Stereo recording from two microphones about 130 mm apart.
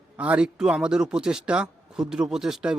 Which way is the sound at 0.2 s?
10° right (ahead or behind).